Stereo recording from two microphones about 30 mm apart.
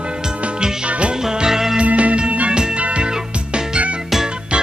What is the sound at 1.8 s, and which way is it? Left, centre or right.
Music, right.